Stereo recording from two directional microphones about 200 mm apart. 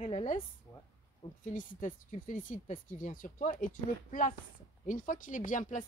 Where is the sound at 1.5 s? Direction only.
40° left (ahead or behind).